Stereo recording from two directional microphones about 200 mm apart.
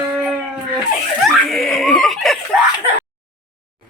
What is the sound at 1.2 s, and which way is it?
Snicker, centre (ahead or behind).